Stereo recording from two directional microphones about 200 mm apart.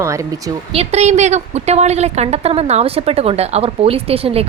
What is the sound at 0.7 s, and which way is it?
A woman's voice, 30° right (ahead or behind).